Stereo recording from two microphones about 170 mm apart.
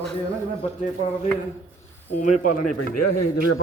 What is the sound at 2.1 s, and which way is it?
Speech, 55° left (ahead or behind).